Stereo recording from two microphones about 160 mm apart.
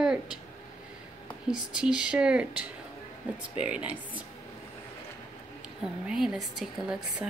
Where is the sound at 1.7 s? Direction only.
5° right (ahead or behind).